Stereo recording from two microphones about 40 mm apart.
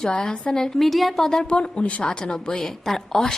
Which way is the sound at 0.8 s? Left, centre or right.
Centre.